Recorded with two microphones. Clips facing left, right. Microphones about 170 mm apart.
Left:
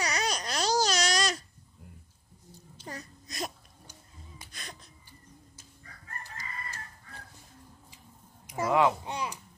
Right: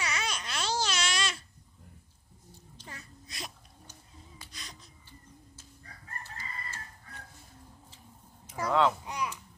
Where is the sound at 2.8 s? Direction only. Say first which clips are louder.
Left 7 dB; 40° left (ahead or behind).